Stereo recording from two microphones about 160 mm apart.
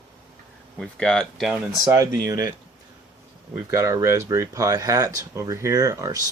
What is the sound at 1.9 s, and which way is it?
Speech, 20° right (ahead or behind).